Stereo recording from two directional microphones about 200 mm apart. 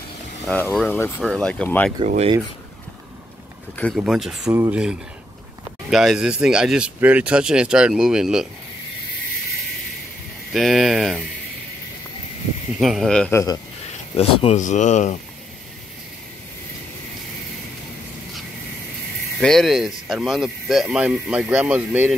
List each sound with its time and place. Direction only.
0.5 s speech: 10° left (ahead or behind)
2.0 s speech: 30° right (ahead or behind)
3.7 s speech: 5° left (ahead or behind)
10.5 s speech: centre (ahead or behind)
12.7 s speech: centre (ahead or behind)
14.1 s speech: 30° left (ahead or behind)
19.4 s speech: centre (ahead or behind)